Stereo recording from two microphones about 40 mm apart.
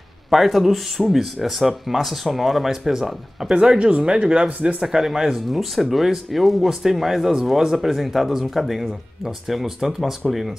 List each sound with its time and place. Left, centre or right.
0.3 s speech: centre
3.5 s speech: right
4.5 s speech: right
4.8 s speech: centre